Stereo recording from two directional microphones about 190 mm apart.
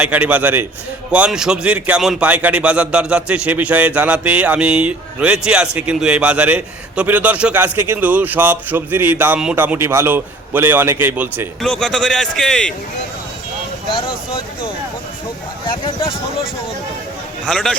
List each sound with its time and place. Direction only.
0.0 s a man's voice: 10° right (ahead or behind)
11.6 s a man's voice: 5° left (ahead or behind)
13.9 s speech: 25° left (ahead or behind)
17.4 s a man's voice: centre (ahead or behind)